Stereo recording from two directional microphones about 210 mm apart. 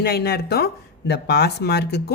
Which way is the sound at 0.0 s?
50° left (ahead or behind).